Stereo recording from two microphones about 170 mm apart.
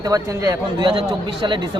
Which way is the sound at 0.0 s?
20° right (ahead or behind).